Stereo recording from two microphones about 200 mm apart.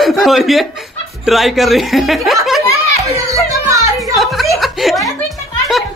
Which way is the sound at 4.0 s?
Centre (ahead or behind).